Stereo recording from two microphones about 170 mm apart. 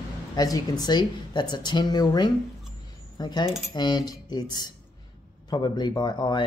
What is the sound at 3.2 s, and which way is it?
Mechanisms, 25° left (ahead or behind).